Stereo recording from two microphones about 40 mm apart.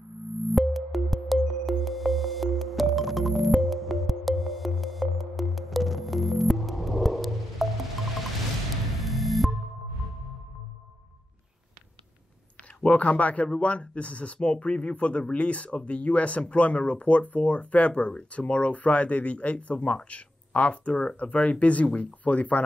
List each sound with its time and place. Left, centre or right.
0.6 s music: centre
9.0 s music: centre
12.8 s speech: left